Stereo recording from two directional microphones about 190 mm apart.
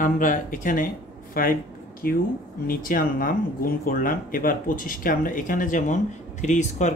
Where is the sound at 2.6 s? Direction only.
50° left (ahead or behind).